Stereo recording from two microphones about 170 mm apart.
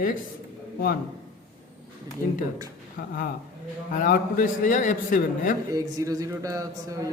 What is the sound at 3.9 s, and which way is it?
A man's voice, 55° left (ahead or behind).